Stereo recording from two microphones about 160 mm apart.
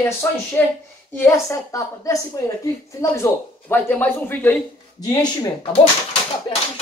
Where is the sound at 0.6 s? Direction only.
10° left (ahead or behind).